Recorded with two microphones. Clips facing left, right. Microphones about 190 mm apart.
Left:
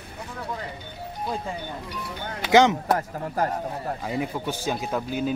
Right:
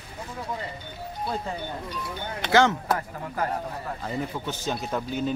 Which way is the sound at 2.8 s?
40° left (ahead or behind).